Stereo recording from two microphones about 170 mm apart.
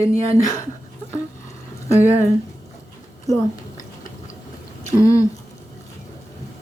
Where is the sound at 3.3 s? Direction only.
20° left (ahead or behind).